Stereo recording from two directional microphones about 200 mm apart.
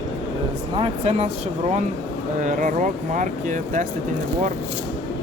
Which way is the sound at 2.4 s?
40° right (ahead or behind).